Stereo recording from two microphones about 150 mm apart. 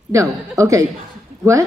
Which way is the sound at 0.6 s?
20° right (ahead or behind).